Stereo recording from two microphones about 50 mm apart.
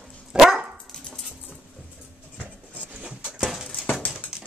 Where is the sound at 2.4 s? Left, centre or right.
Right.